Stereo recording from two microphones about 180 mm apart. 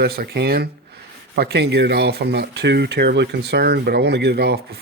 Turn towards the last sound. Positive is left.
turn(degrees=-65)  # may be behind; listen again after turning